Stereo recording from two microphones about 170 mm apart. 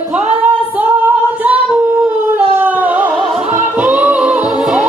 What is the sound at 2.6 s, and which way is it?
Music, 10° right (ahead or behind).